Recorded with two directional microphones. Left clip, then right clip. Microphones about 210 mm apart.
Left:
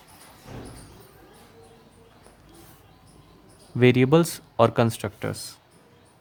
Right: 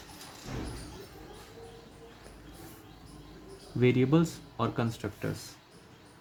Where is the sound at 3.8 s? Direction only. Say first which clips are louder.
Left 8 dB; 35° left (ahead or behind).